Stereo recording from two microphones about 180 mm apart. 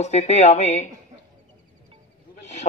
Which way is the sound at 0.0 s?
40° left (ahead or behind).